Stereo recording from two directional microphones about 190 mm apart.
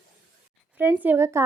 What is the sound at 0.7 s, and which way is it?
Speech, 10° right (ahead or behind).